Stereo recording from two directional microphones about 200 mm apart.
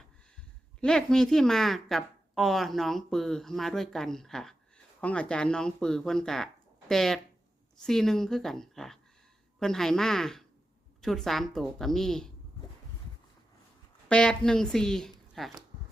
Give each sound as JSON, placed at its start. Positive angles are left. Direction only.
{"t": 0.8, "sound": "a woman's voice", "side_deg": 5}
{"t": 14.1, "sound": "a woman's voice", "side_deg": 5}